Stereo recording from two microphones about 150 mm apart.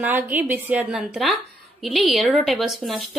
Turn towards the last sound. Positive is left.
turn(degrees=0)  # may be behind; listen again after turning